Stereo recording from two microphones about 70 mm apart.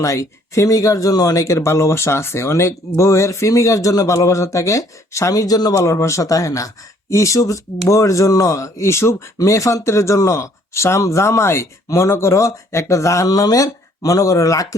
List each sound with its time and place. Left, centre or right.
0.0 s speech: left
5.7 s speech: left